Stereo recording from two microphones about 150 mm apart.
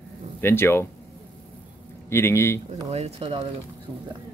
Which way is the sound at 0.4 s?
15° left (ahead or behind).